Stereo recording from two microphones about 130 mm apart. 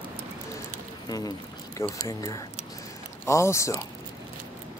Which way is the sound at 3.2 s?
20° left (ahead or behind).